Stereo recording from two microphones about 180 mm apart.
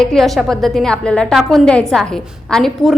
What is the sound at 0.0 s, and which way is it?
A woman's voice, centre (ahead or behind).